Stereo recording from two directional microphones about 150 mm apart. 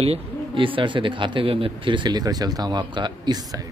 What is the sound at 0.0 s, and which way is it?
Speech, 40° right (ahead or behind).